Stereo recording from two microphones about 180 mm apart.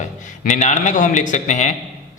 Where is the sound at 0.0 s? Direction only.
40° left (ahead or behind).